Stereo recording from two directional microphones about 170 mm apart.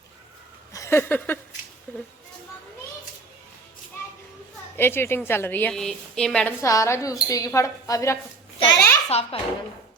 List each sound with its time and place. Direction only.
0.7 s a sound: 15° left (ahead or behind)
1.9 s speech: 10° left (ahead or behind)
4.8 s a woman's voice: 15° left (ahead or behind)
6.6 s speech: 20° left (ahead or behind)
8.5 s a sound: 30° left (ahead or behind)
9.0 s a child's voice: 40° left (ahead or behind)